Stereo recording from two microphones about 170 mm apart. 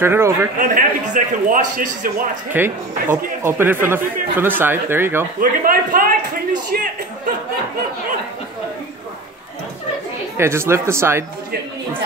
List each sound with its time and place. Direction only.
0.0 s speech: 15° right (ahead or behind)
0.6 s a man's voice: 55° right (ahead or behind)
2.5 s speech: 10° right (ahead or behind)
5.4 s a man's voice: 55° right (ahead or behind)
10.3 s speech: 15° right (ahead or behind)